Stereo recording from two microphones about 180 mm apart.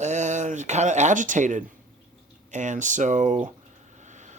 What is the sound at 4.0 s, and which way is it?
Vehicle, 40° right (ahead or behind).